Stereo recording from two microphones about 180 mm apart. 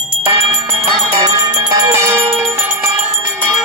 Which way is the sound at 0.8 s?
30° right (ahead or behind).